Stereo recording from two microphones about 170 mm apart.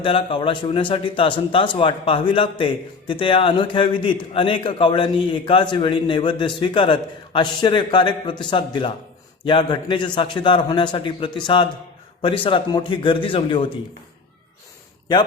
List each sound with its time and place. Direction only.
0.0 s a man's voice: 30° left (ahead or behind)